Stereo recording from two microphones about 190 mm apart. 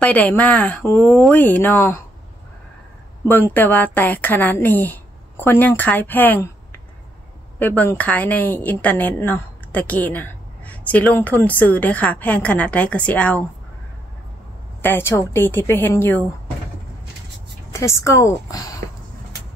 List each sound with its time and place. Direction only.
0.0 s a woman's voice: 10° left (ahead or behind)
3.5 s a woman's voice: 10° left (ahead or behind)
7.5 s a woman's voice: 10° left (ahead or behind)
14.8 s a woman's voice: 10° left (ahead or behind)
17.7 s a woman's voice: 15° left (ahead or behind)